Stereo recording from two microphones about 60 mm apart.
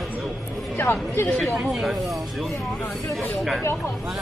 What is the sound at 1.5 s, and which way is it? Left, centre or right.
Speech, centre.